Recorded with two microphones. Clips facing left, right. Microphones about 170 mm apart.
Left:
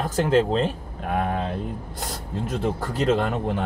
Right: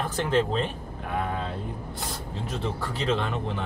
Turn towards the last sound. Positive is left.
turn(degrees=55)  # may be behind; listen again after turning